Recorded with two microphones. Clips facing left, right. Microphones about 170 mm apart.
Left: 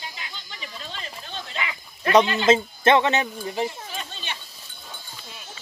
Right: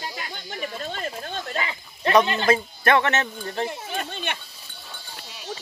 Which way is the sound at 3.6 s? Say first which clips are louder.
Right 1 dB; 55° right (ahead or behind).